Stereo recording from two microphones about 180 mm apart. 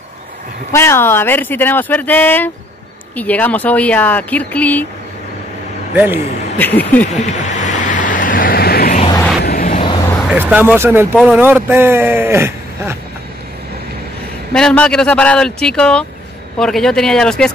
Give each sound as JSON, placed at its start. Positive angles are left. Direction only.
{"t": 0.7, "sound": "speech", "side_deg": 15}
{"t": 5.9, "sound": "speech", "side_deg": -10}
{"t": 6.6, "sound": "speech", "side_deg": 10}
{"t": 7.2, "sound": "vehicle", "side_deg": 40}
{"t": 9.8, "sound": "vehicle", "side_deg": 30}
{"t": 10.3, "sound": "speech", "side_deg": -10}
{"t": 14.5, "sound": "speech", "side_deg": 5}